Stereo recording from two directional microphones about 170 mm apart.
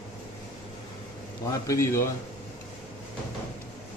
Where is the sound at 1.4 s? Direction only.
20° left (ahead or behind).